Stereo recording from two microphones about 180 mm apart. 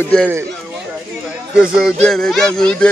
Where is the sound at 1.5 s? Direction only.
5° right (ahead or behind).